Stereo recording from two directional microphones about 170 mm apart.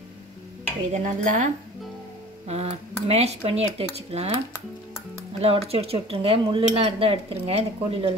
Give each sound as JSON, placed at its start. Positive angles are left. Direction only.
{"t": 0.9, "sound": "dishes", "side_deg": -45}
{"t": 2.4, "sound": "speech", "side_deg": -40}
{"t": 5.4, "sound": "speech", "side_deg": -35}